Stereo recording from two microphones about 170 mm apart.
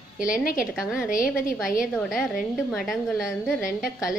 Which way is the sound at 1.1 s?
55° left (ahead or behind).